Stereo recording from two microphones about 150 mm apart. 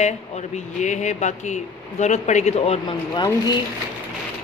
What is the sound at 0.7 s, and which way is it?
Speech, 50° left (ahead or behind).